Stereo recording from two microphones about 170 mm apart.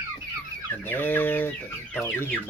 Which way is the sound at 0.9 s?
10° left (ahead or behind).